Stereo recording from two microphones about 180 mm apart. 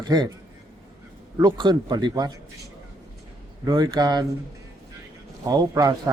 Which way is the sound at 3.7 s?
25° right (ahead or behind).